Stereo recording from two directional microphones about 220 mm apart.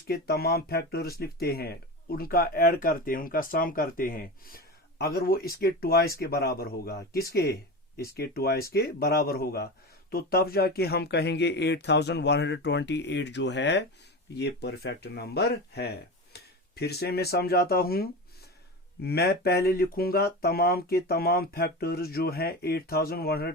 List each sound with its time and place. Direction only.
0.1 s speech: 45° left (ahead or behind)